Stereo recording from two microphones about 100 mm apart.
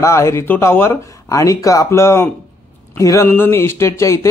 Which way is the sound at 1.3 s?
35° left (ahead or behind).